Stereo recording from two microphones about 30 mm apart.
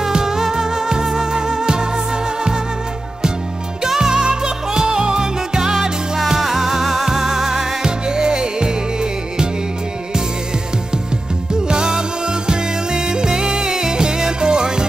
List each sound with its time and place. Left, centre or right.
0.0 s music: centre
3.8 s music: right
5.7 s music: centre
11.6 s music: right